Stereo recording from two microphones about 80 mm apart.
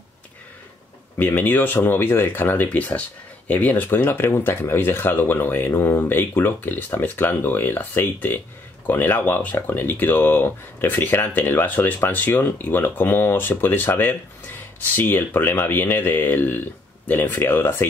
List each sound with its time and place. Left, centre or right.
1.1 s speech: left